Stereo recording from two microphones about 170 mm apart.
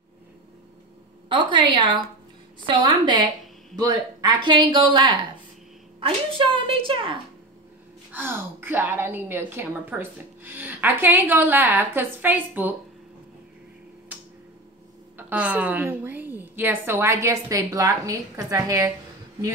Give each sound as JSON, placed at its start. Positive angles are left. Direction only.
{"t": 1.3, "sound": "a woman's voice", "side_deg": -30}
{"t": 8.1, "sound": "a woman's voice", "side_deg": -10}
{"t": 15.1, "sound": "a woman's voice", "side_deg": -10}